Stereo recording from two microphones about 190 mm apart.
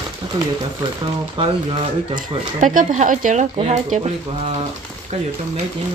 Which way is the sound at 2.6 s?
45° right (ahead or behind).